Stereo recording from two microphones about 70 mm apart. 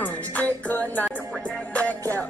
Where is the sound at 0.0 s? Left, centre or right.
Left.